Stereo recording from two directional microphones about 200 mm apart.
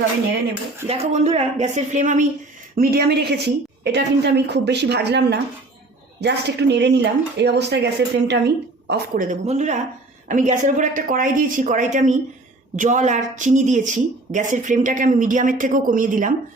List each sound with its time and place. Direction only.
0.9 s a woman's voice: 30° right (ahead or behind)
2.7 s a woman's voice: 50° right (ahead or behind)
9.3 s a woman's voice: 35° right (ahead or behind)